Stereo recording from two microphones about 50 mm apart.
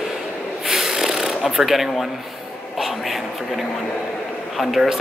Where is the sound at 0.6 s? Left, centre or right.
Centre.